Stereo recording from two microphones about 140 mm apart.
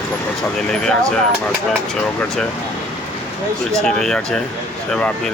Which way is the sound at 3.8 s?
5° left (ahead or behind).